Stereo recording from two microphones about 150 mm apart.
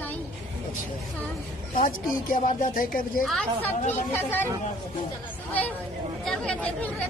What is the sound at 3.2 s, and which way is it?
A woman's voice, 5° left (ahead or behind).